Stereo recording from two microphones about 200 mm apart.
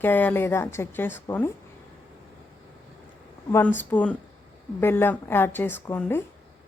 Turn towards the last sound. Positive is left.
turn(degrees=10)  # may be behind; listen again after turning